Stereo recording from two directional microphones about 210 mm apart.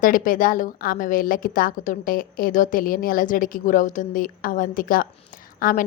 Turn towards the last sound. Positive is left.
turn(degrees=40)  # may be behind; listen again after turning